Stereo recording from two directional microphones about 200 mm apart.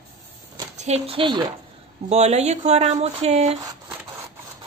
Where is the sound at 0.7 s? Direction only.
35° right (ahead or behind).